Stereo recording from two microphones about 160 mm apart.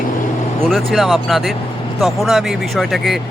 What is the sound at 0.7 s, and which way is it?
Speech, centre (ahead or behind).